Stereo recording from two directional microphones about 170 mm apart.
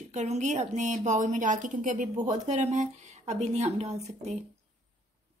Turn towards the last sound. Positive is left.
turn(degrees=-40)  # may be behind; listen again after turning